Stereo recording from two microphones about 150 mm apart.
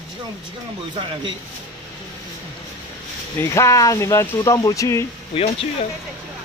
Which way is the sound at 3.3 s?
20° left (ahead or behind).